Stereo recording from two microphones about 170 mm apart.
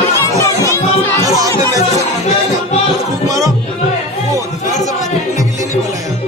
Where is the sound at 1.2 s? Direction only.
20° right (ahead or behind).